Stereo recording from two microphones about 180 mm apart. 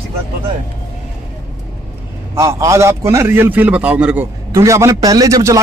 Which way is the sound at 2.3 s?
15° right (ahead or behind).